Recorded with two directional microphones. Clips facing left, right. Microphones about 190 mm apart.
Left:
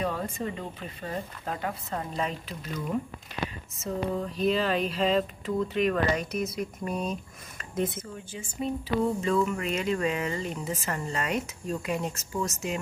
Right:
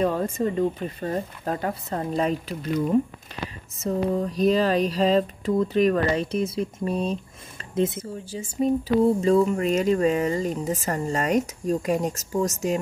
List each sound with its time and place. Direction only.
0.0 s speech: 40° right (ahead or behind)